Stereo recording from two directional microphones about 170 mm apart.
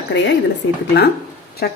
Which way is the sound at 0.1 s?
90° left.